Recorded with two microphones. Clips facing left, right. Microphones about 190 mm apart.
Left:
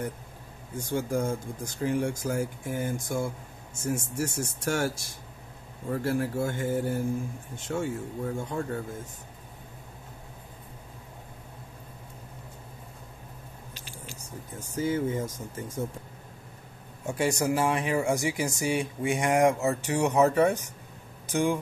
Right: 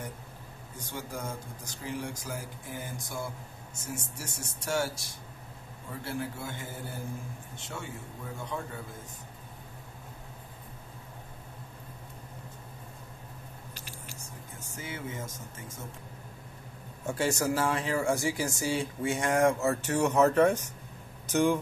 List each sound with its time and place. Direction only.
0.7 s speech: 50° left (ahead or behind)
14.8 s speech: 35° left (ahead or behind)
17.0 s speech: 15° left (ahead or behind)